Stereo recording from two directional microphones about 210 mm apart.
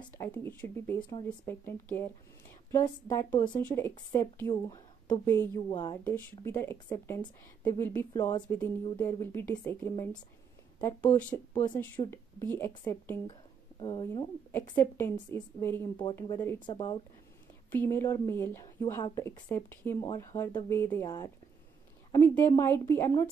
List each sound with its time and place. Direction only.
0.0 s speech: 10° left (ahead or behind)
6.0 s speech: 10° left (ahead or behind)
14.5 s speech: 10° left (ahead or behind)
17.6 s speech: 10° left (ahead or behind)